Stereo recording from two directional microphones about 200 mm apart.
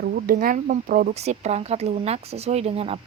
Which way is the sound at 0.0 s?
45° right (ahead or behind).